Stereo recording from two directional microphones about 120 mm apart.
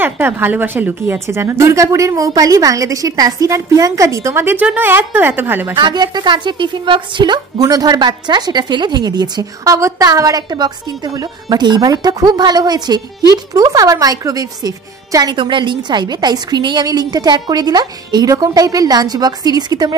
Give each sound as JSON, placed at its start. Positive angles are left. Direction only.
{"t": 0.0, "sound": "a woman's voice", "side_deg": -15}
{"t": 5.8, "sound": "a woman's voice", "side_deg": -35}
{"t": 15.3, "sound": "a woman's voice", "side_deg": -40}